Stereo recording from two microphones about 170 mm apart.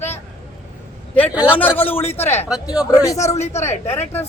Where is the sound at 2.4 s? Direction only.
5° right (ahead or behind).